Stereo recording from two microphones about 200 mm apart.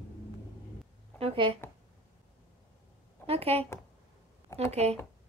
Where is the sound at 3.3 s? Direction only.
30° right (ahead or behind).